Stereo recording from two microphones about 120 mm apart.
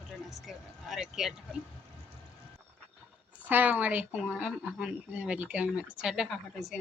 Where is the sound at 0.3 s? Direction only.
Centre (ahead or behind).